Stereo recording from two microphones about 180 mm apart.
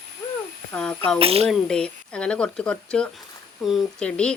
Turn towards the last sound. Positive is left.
turn(degrees=5)  # may be behind; listen again after turning